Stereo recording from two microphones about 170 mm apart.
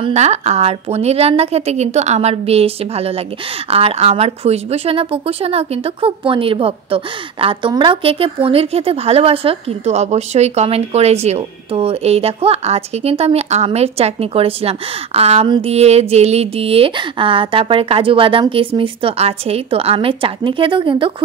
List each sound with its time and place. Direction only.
0.0 s speech: 40° right (ahead or behind)